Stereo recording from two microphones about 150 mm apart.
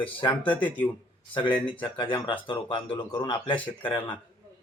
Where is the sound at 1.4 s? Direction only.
35° left (ahead or behind).